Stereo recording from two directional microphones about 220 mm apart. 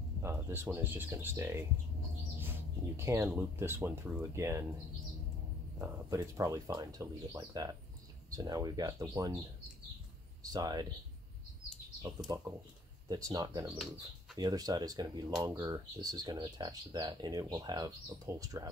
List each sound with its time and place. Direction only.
0.2 s speech: 10° right (ahead or behind)
5.8 s speech: 15° right (ahead or behind)
10.4 s speech: 15° right (ahead or behind)
12.3 s speech: 15° right (ahead or behind)